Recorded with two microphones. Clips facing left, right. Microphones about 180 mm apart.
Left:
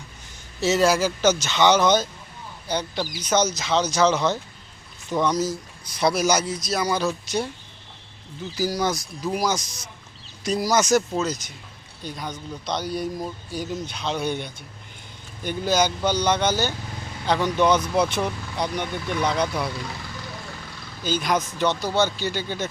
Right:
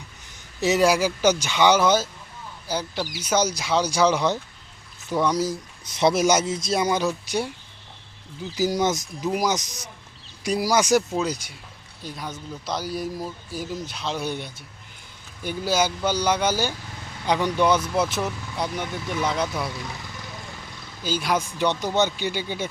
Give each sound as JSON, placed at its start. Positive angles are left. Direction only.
{"t": 0.6, "sound": "a man's voice", "side_deg": -15}
{"t": 8.5, "sound": "a man's voice", "side_deg": -20}
{"t": 9.6, "sound": "speech", "side_deg": -40}
{"t": 10.4, "sound": "speech", "side_deg": -10}
{"t": 21.0, "sound": "speech", "side_deg": -10}